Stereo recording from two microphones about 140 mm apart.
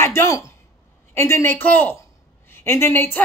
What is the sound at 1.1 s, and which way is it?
A woman's voice, 20° left (ahead or behind).